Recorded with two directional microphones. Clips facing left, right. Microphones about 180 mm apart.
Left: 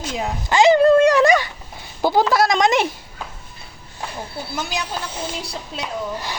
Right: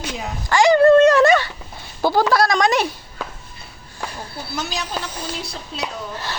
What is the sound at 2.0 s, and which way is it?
Speech, 20° left (ahead or behind).